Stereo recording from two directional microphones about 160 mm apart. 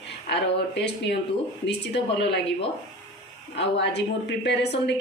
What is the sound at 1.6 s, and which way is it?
Speech, 90° left.